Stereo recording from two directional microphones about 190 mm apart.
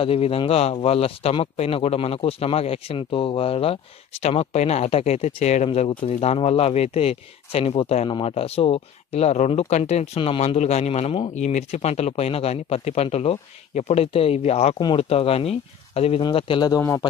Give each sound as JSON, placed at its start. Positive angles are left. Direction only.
{"t": 0.0, "sound": "speech", "side_deg": 30}